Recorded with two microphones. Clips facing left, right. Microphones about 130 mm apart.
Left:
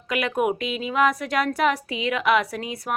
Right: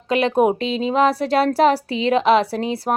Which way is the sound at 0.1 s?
30° right (ahead or behind).